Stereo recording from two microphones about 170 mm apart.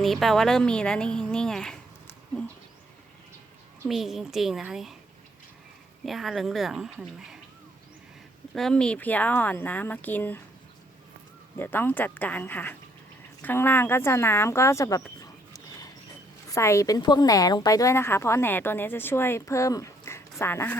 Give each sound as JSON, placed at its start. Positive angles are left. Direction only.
{"t": 0.0, "sound": "speech", "side_deg": 0}
{"t": 3.8, "sound": "speech", "side_deg": 0}
{"t": 6.1, "sound": "speech", "side_deg": 0}
{"t": 8.5, "sound": "a woman's voice", "side_deg": 5}
{"t": 11.6, "sound": "a woman's voice", "side_deg": 10}